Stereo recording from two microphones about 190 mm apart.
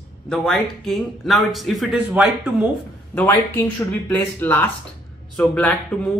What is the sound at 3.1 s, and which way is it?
Speech, 10° left (ahead or behind).